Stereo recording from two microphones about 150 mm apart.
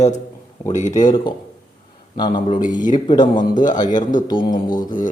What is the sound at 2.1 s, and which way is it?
A man's voice, 30° left (ahead or behind).